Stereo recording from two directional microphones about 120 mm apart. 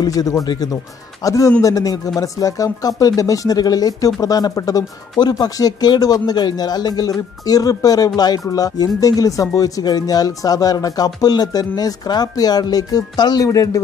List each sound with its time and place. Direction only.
0.0 s speech: 30° left (ahead or behind)